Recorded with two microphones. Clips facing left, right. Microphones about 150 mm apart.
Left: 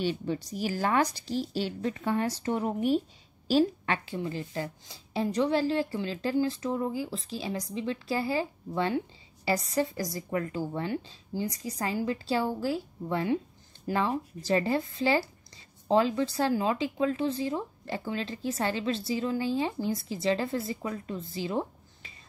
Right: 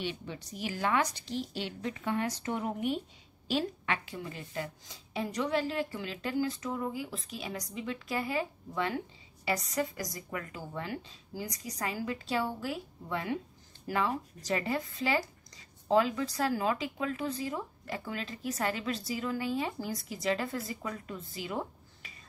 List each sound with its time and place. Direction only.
0.0 s a woman's voice: 40° left (ahead or behind)